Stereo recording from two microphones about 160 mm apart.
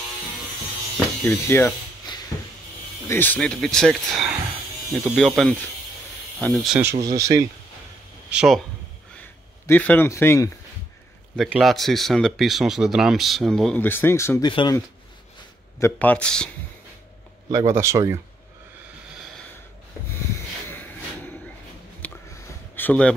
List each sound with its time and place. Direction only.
1.2 s speech: 15° left (ahead or behind)
2.1 s a sound: 30° left (ahead or behind)
3.1 s speech: 10° left (ahead or behind)
6.8 s speech: 20° right (ahead or behind)
8.3 s speech: 5° right (ahead or behind)
9.7 s speech: 10° left (ahead or behind)
11.3 s speech: 5° right (ahead or behind)
13.8 s speech: 15° left (ahead or behind)
14.4 s speech: 30° left (ahead or behind)
15.8 s speech: 10° left (ahead or behind)
17.5 s speech: 20° right (ahead or behind)
22.0 s a sound: 10° left (ahead or behind)
22.8 s speech: 10° left (ahead or behind)